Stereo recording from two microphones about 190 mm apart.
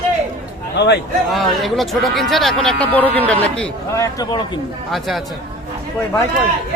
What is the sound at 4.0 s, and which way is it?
Speech, 20° left (ahead or behind).